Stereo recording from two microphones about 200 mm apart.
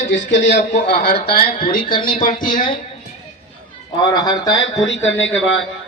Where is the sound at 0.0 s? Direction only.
65° left (ahead or behind).